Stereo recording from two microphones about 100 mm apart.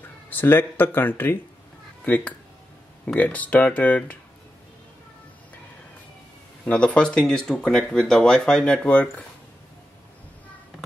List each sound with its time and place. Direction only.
0.3 s speech: 20° left (ahead or behind)
6.6 s speech: 10° left (ahead or behind)